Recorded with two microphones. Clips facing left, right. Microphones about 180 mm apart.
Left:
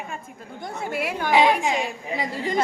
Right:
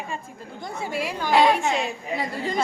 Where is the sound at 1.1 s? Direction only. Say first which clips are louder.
Even; 5° left (ahead or behind).